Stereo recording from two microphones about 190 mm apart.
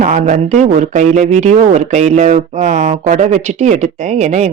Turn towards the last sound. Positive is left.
turn(degrees=-35)  # may be behind; listen again after turning